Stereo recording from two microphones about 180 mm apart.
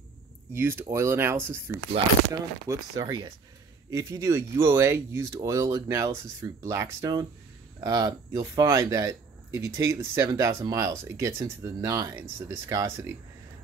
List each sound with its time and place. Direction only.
0.5 s speech: 15° right (ahead or behind)